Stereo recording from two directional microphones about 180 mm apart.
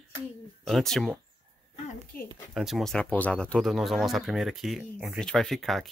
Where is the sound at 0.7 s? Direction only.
Centre (ahead or behind).